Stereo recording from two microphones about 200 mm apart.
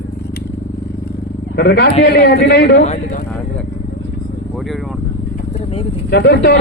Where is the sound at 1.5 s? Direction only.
55° left (ahead or behind).